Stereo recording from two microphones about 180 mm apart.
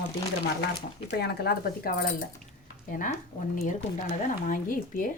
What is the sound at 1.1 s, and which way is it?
Speech, 60° left (ahead or behind).